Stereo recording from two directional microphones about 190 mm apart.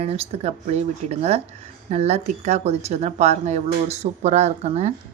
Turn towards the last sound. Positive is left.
turn(degrees=-35)  # may be behind; listen again after turning